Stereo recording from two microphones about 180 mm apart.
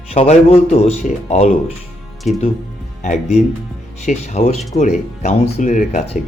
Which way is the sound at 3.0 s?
40° left (ahead or behind).